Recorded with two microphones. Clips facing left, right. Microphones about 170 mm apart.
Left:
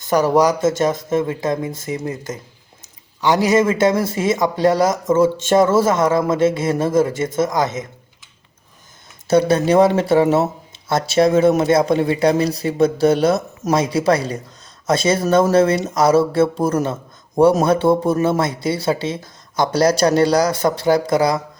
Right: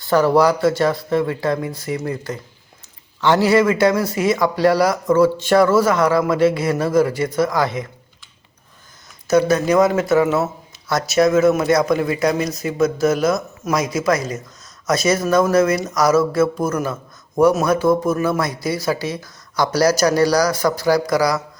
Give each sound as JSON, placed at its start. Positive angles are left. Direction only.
{"t": 0.1, "sound": "speech", "side_deg": 15}
{"t": 9.2, "sound": "speech", "side_deg": 30}